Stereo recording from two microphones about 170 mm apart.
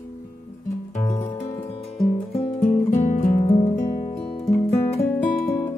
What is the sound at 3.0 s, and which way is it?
Music, 45° left (ahead or behind).